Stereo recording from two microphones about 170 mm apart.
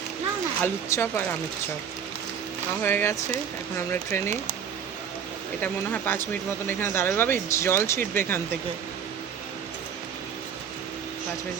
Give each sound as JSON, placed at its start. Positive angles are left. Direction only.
{"t": 0.6, "sound": "speech", "side_deg": 15}
{"t": 2.8, "sound": "speech", "side_deg": 15}
{"t": 5.6, "sound": "speech", "side_deg": 10}